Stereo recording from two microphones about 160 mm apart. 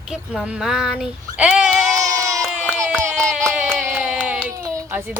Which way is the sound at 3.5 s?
10° right (ahead or behind).